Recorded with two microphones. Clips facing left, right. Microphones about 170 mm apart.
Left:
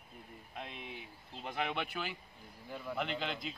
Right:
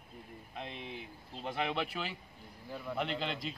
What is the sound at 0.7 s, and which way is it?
Speech, 30° right (ahead or behind).